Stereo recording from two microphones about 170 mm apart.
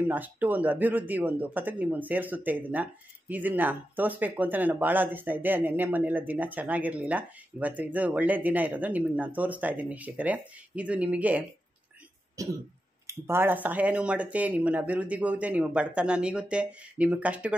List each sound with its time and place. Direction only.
0.1 s speech: 10° right (ahead or behind)
12.4 s throat clearing: 20° right (ahead or behind)
13.0 s speech: 15° right (ahead or behind)